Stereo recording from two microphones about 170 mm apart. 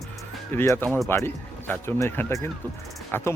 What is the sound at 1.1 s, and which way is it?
Speech, 15° left (ahead or behind).